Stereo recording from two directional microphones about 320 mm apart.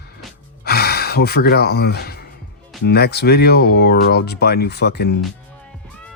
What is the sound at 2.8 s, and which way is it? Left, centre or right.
Speech, left.